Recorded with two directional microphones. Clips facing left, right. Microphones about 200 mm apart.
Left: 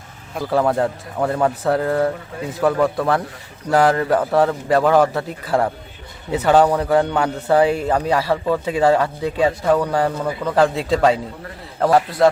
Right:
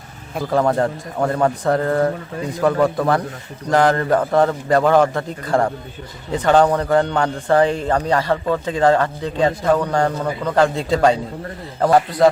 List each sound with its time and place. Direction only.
0.3 s a man's voice: 5° left (ahead or behind)